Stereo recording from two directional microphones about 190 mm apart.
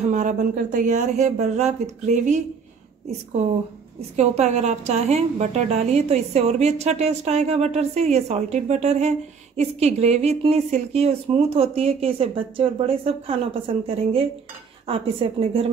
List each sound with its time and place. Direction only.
0.0 s a woman's voice: 40° right (ahead or behind)
4.2 s a woman's voice: 35° right (ahead or behind)